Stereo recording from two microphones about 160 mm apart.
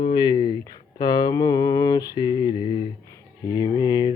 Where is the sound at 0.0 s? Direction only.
30° left (ahead or behind).